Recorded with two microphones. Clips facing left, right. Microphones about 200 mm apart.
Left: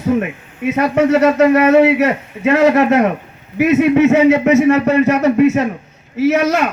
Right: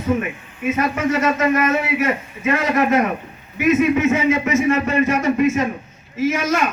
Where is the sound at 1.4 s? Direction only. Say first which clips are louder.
Left 9 dB; 70° left (ahead or behind).